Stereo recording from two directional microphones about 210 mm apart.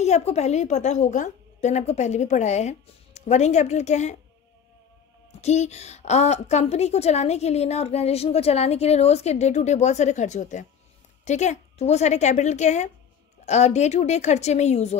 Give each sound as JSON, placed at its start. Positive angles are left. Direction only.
{"t": 0.0, "sound": "a woman's voice", "side_deg": 30}
{"t": 5.4, "sound": "a woman's voice", "side_deg": 30}